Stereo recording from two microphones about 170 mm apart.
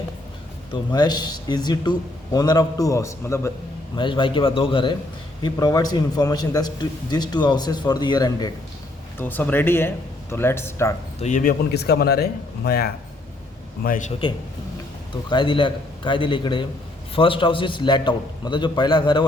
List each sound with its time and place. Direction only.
0.7 s a man's voice: 25° left (ahead or behind)
3.9 s a man's voice: 30° left (ahead or behind)
9.1 s speech: 10° left (ahead or behind)
11.2 s speech: 45° left (ahead or behind)
11.7 s speech: 70° left (ahead or behind)
13.8 s speech: 50° left (ahead or behind)
15.3 s a man's voice: 30° left (ahead or behind)